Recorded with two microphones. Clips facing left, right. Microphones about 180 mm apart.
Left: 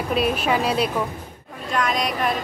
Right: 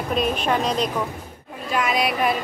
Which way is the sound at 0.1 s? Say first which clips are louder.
Left 1 dB; 5° left (ahead or behind).